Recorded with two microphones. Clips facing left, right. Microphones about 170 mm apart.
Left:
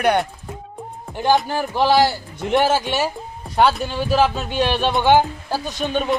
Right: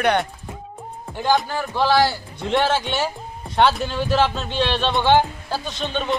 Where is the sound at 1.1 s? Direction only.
15° left (ahead or behind).